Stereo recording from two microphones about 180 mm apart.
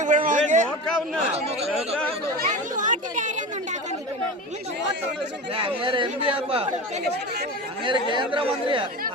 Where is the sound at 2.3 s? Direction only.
45° right (ahead or behind).